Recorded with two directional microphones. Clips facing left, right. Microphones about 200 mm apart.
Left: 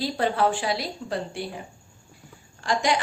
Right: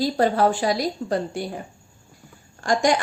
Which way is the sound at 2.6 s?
45° right (ahead or behind).